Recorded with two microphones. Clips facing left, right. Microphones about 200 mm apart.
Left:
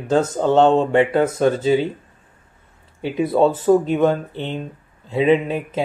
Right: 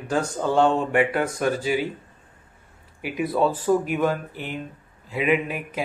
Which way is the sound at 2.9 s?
25° left (ahead or behind).